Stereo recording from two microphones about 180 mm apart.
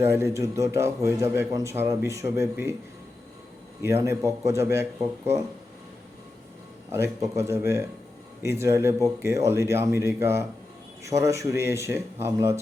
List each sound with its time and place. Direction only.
0.0 s a man's voice: 15° right (ahead or behind)
3.8 s a man's voice: 15° right (ahead or behind)
6.9 s a man's voice: 15° right (ahead or behind)